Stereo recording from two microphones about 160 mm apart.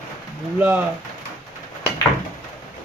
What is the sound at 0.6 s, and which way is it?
Speech, 10° right (ahead or behind).